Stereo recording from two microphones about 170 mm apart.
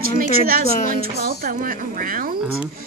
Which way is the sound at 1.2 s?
55° right (ahead or behind).